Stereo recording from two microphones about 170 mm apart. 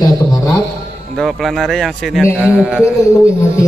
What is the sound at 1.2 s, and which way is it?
A man's voice, centre (ahead or behind).